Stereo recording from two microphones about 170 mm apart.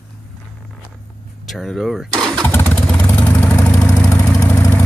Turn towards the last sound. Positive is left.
turn(degrees=15)  # may be behind; listen again after turning